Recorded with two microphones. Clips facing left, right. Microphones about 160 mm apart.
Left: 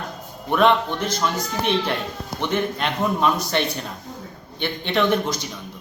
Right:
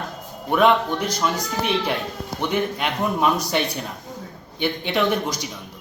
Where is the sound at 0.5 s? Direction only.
10° right (ahead or behind).